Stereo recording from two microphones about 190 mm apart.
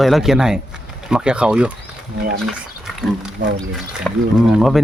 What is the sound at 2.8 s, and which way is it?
Wild animals, centre (ahead or behind).